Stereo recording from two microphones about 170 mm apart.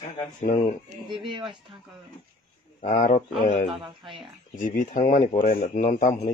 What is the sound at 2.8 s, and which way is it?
Speech, 45° left (ahead or behind).